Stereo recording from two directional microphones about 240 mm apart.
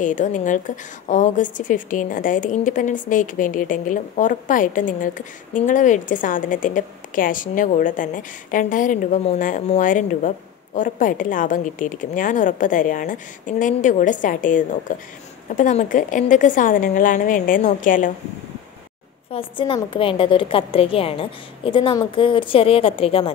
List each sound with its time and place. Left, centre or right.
0.0 s a woman's voice: left
19.3 s a woman's voice: left